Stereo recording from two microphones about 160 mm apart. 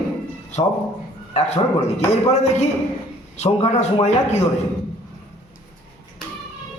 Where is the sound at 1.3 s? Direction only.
45° left (ahead or behind).